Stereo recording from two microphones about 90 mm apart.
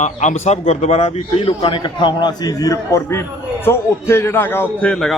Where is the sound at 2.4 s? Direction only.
40° left (ahead or behind); by 4.6 s 25° left (ahead or behind).